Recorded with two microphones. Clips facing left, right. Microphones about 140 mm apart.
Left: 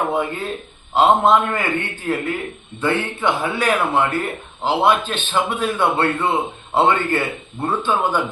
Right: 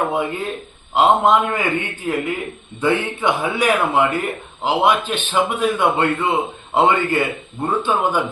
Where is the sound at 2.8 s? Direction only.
15° right (ahead or behind).